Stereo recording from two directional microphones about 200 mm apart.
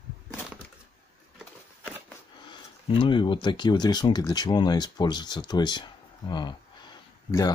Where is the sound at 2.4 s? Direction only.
25° left (ahead or behind).